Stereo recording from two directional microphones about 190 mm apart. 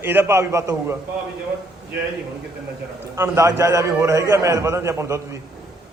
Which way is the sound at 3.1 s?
15° right (ahead or behind).